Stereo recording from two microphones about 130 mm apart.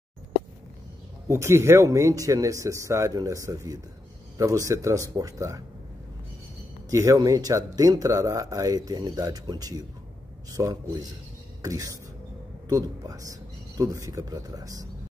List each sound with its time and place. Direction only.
1.2 s speech: 20° right (ahead or behind)
6.9 s speech: 25° right (ahead or behind)